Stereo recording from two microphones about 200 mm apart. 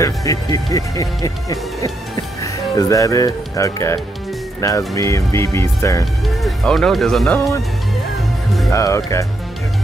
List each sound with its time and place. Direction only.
0.0 s speech: 15° left (ahead or behind)
6.2 s speech: centre (ahead or behind)
8.6 s speech: 15° left (ahead or behind)